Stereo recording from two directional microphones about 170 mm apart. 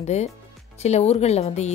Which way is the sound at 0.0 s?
40° left (ahead or behind).